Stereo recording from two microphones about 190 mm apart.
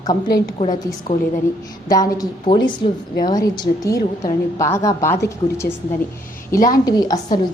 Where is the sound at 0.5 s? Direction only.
30° left (ahead or behind).